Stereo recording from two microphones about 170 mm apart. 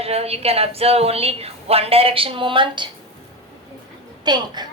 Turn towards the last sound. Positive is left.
turn(degrees=-25)  # may be behind; listen again after turning